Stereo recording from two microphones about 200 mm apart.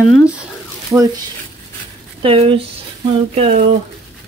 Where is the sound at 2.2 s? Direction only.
25° right (ahead or behind).